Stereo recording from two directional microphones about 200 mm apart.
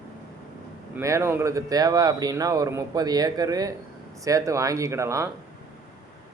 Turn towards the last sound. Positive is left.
turn(degrees=-15)  # may be behind; listen again after turning